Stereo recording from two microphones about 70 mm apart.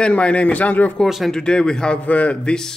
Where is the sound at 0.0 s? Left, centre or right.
Centre.